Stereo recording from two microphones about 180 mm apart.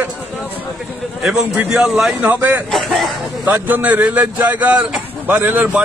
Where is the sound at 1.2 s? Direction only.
5° right (ahead or behind).